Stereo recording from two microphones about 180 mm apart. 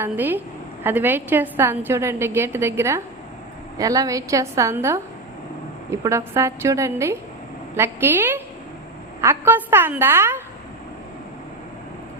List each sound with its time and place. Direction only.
0.0 s a woman's voice: 10° right (ahead or behind)